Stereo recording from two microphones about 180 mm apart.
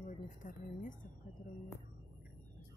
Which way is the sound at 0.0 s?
45° left (ahead or behind).